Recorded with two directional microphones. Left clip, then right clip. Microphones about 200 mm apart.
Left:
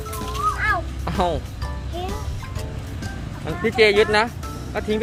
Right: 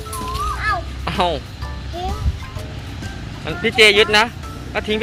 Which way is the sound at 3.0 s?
5° left (ahead or behind).